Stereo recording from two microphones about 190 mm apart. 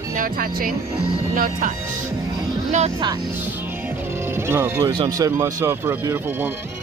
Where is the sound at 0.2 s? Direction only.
50° right (ahead or behind).